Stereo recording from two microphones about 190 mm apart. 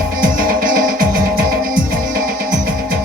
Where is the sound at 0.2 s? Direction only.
50° right (ahead or behind).